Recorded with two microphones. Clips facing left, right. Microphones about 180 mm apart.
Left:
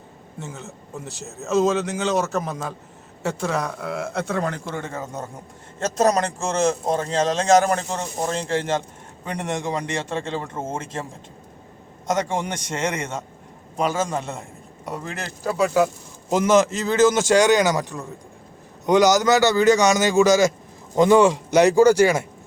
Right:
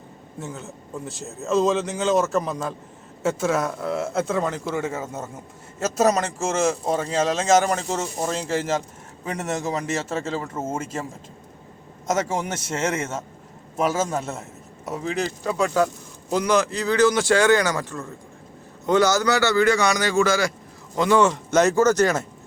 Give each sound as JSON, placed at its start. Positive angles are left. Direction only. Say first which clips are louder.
{"t": 0.3, "sound": "a man's voice", "louder": "right 1 dB", "side_deg": 0}
{"t": 12.5, "sound": "a man's voice", "louder": "right 1 dB", "side_deg": -5}
{"t": 16.3, "sound": "a man's voice", "louder": "left 3 dB", "side_deg": 20}